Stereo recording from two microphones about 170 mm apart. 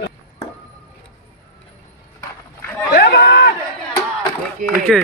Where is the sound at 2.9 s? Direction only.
70° left (ahead or behind).